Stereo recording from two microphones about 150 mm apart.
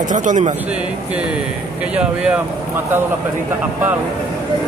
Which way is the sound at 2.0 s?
5° right (ahead or behind).